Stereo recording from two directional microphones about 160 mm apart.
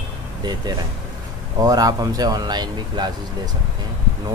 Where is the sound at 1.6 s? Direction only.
20° right (ahead or behind).